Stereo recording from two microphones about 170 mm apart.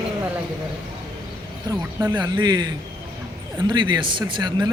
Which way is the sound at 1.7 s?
25° right (ahead or behind).